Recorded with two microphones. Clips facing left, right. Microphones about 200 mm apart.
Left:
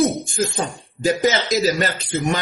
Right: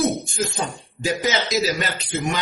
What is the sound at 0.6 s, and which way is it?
A man's voice, 45° left (ahead or behind).